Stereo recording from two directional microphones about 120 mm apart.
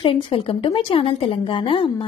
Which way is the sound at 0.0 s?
50° left (ahead or behind).